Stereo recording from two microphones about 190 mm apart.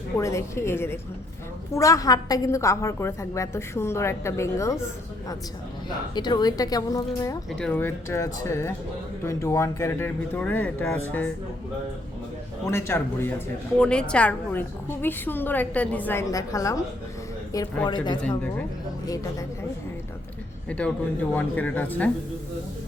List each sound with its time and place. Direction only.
0.2 s a woman's voice: 15° left (ahead or behind)
6.1 s a woman's voice: 20° left (ahead or behind)
12.6 s a woman's voice: 15° left (ahead or behind)
17.8 s a woman's voice: 25° left (ahead or behind)
20.7 s a woman's voice: 5° left (ahead or behind)